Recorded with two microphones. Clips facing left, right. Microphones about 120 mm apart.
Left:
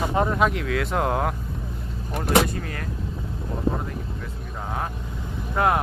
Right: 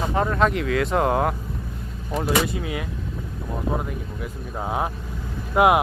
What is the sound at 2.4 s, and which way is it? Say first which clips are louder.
Speech: right 3 dB; 5° right (ahead or behind).